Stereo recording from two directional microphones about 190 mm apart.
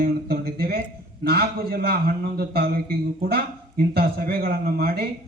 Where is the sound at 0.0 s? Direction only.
50° right (ahead or behind).